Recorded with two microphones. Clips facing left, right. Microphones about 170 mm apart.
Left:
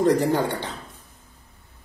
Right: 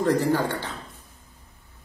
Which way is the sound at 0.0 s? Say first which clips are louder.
Left 2 dB; 20° left (ahead or behind).